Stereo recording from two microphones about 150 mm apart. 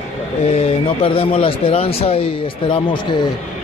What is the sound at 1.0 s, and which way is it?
Speech, 40° left (ahead or behind).